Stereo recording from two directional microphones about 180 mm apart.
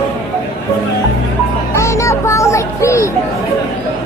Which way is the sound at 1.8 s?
15° left (ahead or behind).